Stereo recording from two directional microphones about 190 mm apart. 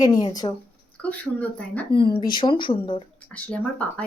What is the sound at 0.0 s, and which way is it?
Speech, 20° left (ahead or behind).